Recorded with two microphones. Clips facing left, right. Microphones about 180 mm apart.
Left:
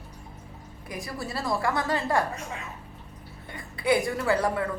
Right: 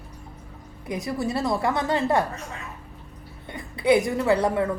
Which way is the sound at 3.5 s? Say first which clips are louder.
Right 5 dB; 20° right (ahead or behind).